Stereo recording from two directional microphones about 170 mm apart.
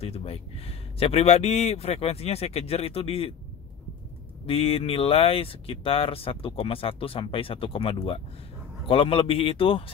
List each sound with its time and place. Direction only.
0.0 s speech: 35° left (ahead or behind)
4.5 s speech: 35° left (ahead or behind)